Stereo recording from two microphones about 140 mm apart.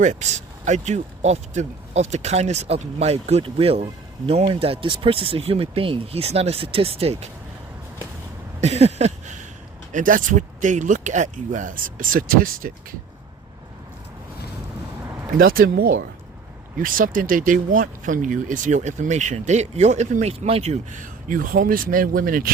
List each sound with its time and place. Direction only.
0.0 s speech: 60° right (ahead or behind)
8.6 s a sound: 50° right (ahead or behind)
9.9 s speech: 70° right (ahead or behind); by 12.7 s 90° right
15.4 s speech: 90° right
16.7 s speech: 80° right